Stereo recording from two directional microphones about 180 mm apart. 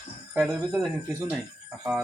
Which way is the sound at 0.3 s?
Centre (ahead or behind).